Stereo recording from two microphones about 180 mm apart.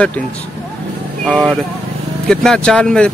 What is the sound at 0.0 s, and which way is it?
Speech, 5° left (ahead or behind).